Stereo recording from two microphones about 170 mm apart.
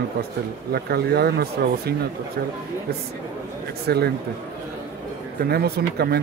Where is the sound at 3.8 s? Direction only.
65° right (ahead or behind).